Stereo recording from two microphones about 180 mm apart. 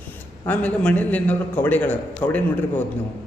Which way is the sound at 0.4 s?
5° left (ahead or behind).